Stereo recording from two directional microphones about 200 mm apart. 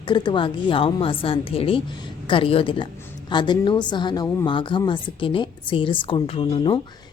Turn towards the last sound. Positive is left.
turn(degrees=25)  # may be behind; listen again after turning